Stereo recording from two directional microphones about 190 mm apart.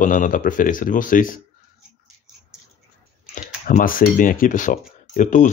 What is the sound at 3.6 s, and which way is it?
Speech, 45° left (ahead or behind).